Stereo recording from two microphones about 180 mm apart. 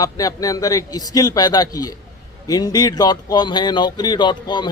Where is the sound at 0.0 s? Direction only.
20° left (ahead or behind).